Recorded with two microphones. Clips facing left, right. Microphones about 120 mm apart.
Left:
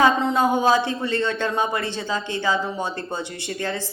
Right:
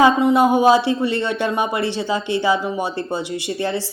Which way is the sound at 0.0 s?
15° right (ahead or behind).